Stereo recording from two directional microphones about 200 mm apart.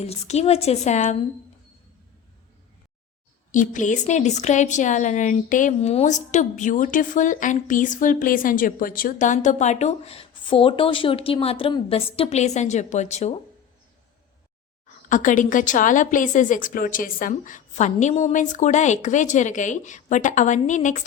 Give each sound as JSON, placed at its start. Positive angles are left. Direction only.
{"t": 0.0, "sound": "a woman's voice", "side_deg": 30}
{"t": 3.5, "sound": "a woman's voice", "side_deg": 40}
{"t": 15.1, "sound": "a woman's voice", "side_deg": 40}